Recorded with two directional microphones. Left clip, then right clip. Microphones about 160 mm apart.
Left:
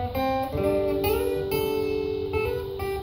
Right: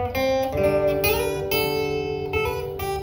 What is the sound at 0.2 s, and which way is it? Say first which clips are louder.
Guitar: right 4 dB; 25° right (ahead or behind).